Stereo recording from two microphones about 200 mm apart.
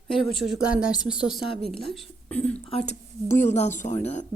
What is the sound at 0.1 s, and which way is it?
A woman's voice, centre (ahead or behind).